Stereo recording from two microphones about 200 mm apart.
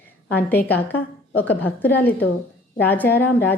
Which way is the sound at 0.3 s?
10° left (ahead or behind).